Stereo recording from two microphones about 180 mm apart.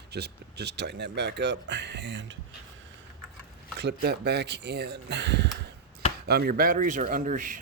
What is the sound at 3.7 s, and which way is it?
Speech, 65° right (ahead or behind).